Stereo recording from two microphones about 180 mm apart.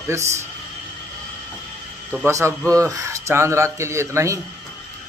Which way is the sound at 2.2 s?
15° right (ahead or behind).